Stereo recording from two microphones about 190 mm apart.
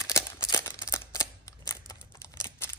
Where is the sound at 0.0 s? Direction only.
15° left (ahead or behind).